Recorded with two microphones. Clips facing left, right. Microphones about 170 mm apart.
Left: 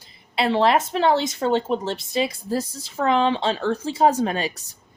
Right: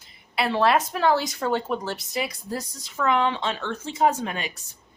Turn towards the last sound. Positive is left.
turn(degrees=35)  # may be behind; listen again after turning